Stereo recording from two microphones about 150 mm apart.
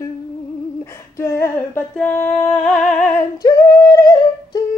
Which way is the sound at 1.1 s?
20° left (ahead or behind).